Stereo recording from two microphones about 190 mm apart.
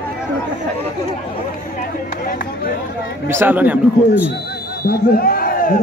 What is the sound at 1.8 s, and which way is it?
Speech, 50° left (ahead or behind).